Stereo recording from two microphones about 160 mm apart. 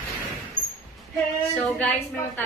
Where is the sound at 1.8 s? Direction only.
5° left (ahead or behind).